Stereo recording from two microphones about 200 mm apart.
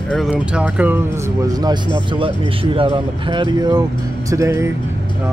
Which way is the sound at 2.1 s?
25° right (ahead or behind).